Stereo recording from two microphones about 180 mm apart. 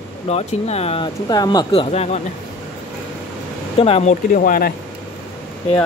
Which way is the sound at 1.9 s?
35° left (ahead or behind).